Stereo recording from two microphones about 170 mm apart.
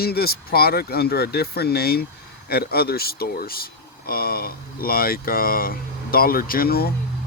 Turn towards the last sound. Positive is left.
turn(degrees=65)  # may be behind; listen again after turning